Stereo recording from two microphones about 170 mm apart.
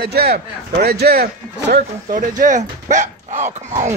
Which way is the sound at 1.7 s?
50° right (ahead or behind).